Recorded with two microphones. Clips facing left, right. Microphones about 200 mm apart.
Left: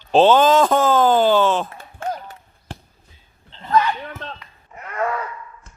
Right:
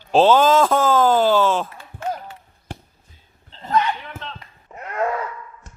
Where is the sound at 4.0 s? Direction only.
50° left (ahead or behind).